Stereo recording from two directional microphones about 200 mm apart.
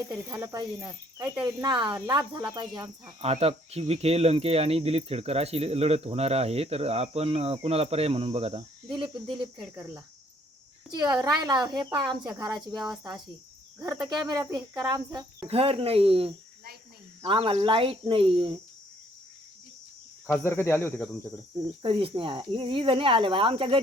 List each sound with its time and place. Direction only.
0.4 s speech: 20° right (ahead or behind)
9.4 s speech: 20° right (ahead or behind)
12.6 s speech: centre (ahead or behind)
14.3 s speech: 20° right (ahead or behind)
20.2 s speech: 10° left (ahead or behind)
21.8 s speech: 25° right (ahead or behind)